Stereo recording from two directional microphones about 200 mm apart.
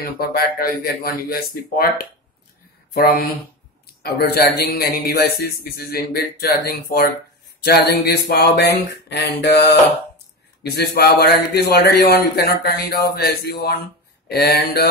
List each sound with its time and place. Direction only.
0.0 s a man's voice: 50° left (ahead or behind)